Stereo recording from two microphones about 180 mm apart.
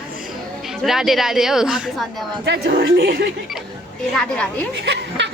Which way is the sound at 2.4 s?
75° right (ahead or behind).